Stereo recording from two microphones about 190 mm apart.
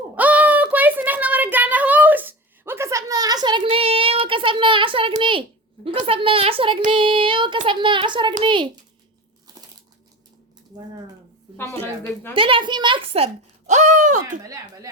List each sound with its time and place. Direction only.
0.2 s a sound: 10° right (ahead or behind); by 7.6 s 25° right (ahead or behind)
7.7 s a child's voice: 25° right (ahead or behind)
11.5 s speech: 15° left (ahead or behind)
12.3 s a child's voice: 25° right (ahead or behind)
14.3 s a child's voice: 20° right (ahead or behind)